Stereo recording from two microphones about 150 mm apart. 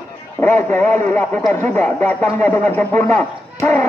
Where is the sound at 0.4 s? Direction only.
15° left (ahead or behind).